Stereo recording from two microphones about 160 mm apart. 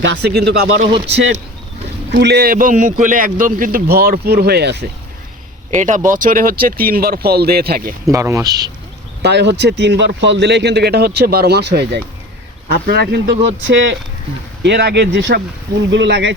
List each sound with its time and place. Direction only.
0.1 s a man's voice: 90° right
0.9 s speech: 35° right (ahead or behind)
2.1 s a man's voice: 85° right
5.7 s speech: 50° right (ahead or behind); by 7.9 s 75° right (ahead or behind)
8.1 s speech: 20° right (ahead or behind)
9.2 s a man's voice: 90° right
12.6 s speech: 75° right (ahead or behind); by 13.2 s 90° right
14.6 s a man's voice: 90° right